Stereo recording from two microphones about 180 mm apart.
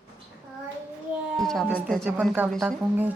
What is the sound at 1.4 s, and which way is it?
Speech, centre (ahead or behind).